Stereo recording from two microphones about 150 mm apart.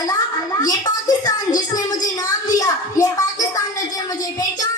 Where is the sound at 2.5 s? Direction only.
25° left (ahead or behind).